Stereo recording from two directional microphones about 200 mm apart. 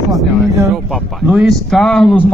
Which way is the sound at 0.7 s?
Centre (ahead or behind).